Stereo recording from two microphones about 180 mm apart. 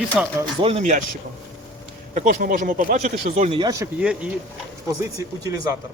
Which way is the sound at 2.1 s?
50° right (ahead or behind).